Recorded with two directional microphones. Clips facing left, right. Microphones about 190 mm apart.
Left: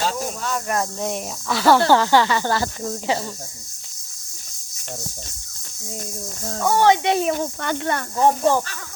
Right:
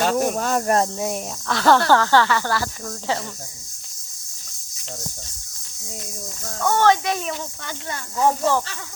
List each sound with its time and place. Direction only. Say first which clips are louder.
0.0 s speech: right 5 dB; 60° right (ahead or behind)
0.9 s speech: even; 5° right (ahead or behind)
1.5 s speech: left 1 dB; 5° left (ahead or behind)
6.6 s speech: left 1 dB; 10° left (ahead or behind)
7.0 s speech: left 5 dB; 30° left (ahead or behind)
7.3 s speech: left 8 dB; 50° left (ahead or behind)
8.2 s speech: left 2 dB; 15° left (ahead or behind)